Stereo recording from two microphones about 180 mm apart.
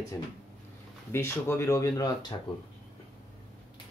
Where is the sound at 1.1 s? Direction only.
15° left (ahead or behind).